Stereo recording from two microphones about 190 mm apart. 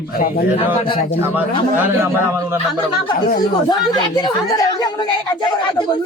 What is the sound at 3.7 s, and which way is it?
A woman's voice, 20° left (ahead or behind).